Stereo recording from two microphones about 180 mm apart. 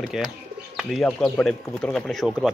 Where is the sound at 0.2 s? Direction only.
Centre (ahead or behind).